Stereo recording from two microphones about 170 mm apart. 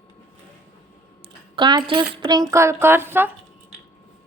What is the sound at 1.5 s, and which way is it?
Speech, 25° right (ahead or behind).